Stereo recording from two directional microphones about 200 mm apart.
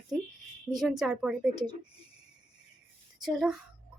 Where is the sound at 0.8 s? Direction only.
Centre (ahead or behind).